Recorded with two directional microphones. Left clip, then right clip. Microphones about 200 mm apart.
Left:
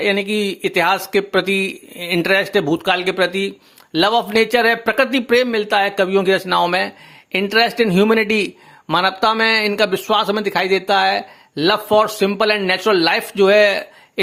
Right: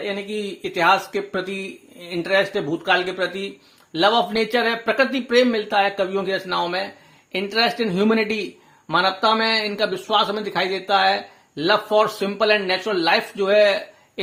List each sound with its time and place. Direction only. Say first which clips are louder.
0.0 s speech: left 9 dB; 40° left (ahead or behind)